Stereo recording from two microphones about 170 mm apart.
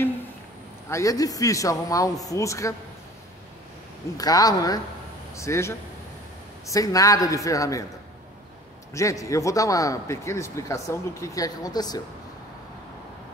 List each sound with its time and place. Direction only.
0.8 s a man's voice: 20° left (ahead or behind)
4.2 s a man's voice: 20° left (ahead or behind)
8.9 s a man's voice: 20° left (ahead or behind)